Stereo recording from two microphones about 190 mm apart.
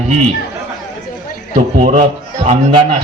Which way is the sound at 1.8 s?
40° right (ahead or behind).